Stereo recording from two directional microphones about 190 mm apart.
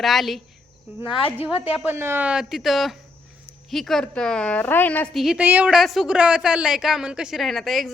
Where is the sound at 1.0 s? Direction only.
30° left (ahead or behind).